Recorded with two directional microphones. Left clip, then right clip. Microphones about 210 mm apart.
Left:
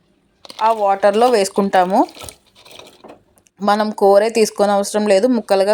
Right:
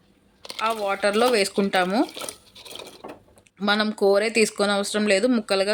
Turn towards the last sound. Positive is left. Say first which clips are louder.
# left 7 dB
turn(degrees=15)  # may be behind; listen again after turning